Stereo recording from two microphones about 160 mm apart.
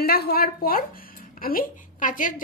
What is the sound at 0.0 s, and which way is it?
Speech, 70° left (ahead or behind).